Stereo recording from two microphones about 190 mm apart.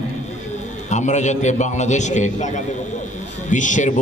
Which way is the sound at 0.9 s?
40° left (ahead or behind).